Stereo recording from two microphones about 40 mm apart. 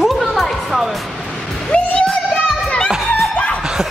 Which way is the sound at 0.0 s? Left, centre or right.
Centre.